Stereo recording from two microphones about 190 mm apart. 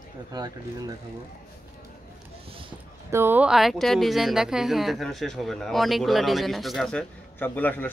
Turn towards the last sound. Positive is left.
turn(degrees=10)  # may be behind; listen again after turning